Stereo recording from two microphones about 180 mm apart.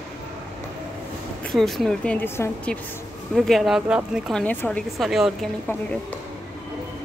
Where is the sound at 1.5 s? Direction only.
Centre (ahead or behind).